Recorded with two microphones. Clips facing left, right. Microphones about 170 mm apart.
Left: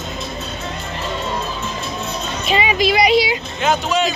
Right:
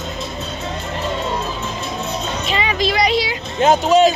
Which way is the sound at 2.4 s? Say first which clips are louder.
Left 4 dB; 15° left (ahead or behind).